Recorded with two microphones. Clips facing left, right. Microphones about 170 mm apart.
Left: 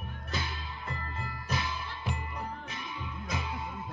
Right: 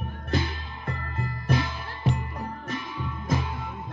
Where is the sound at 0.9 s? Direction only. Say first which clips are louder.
Right 7 dB; 50° right (ahead or behind).